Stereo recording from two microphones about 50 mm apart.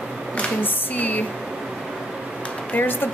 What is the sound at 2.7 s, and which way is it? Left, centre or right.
Speech, left.